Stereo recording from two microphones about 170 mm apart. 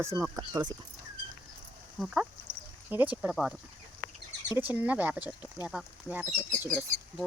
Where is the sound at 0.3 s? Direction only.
20° right (ahead or behind).